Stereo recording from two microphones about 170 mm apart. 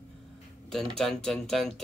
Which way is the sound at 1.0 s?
5° left (ahead or behind).